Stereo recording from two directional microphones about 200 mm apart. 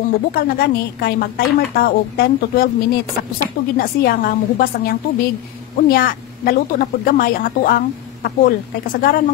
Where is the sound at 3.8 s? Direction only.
45° left (ahead or behind).